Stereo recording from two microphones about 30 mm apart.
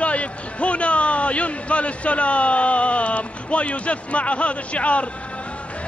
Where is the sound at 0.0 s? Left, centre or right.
Left.